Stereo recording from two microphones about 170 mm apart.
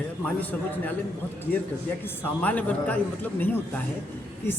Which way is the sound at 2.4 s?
10° left (ahead or behind).